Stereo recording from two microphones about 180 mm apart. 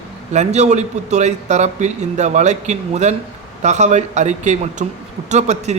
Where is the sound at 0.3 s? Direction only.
40° right (ahead or behind).